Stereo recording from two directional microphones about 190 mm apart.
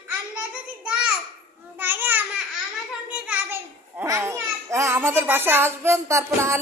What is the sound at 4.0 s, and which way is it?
A child's voice, 15° right (ahead or behind).